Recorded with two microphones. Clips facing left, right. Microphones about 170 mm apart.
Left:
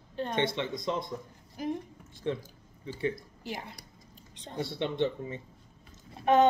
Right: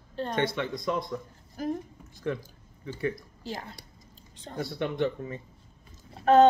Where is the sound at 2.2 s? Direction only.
25° left (ahead or behind).